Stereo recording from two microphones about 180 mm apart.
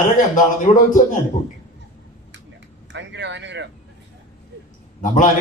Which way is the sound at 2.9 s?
75° right (ahead or behind).